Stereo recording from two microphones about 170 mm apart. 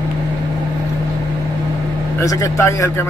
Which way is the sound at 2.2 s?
15° left (ahead or behind).